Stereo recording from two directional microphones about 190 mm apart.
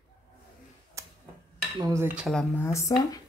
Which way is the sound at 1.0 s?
15° right (ahead or behind).